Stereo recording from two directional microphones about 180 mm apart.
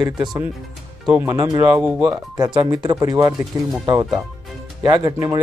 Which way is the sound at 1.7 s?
10° right (ahead or behind).